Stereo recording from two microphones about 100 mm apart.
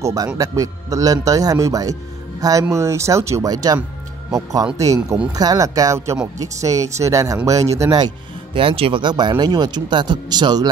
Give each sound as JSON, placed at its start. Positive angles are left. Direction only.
{"t": 0.0, "sound": "speech", "side_deg": -35}
{"t": 8.5, "sound": "speech", "side_deg": -65}
{"t": 9.1, "sound": "speech", "side_deg": -45}